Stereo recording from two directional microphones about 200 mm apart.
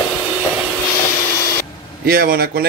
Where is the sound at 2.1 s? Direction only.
50° right (ahead or behind).